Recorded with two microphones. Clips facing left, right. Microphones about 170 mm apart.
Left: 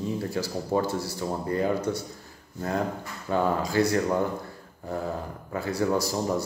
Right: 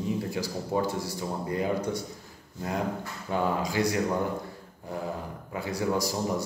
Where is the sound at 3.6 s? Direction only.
15° right (ahead or behind).